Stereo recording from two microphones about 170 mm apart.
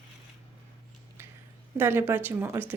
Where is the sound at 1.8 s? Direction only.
15° right (ahead or behind).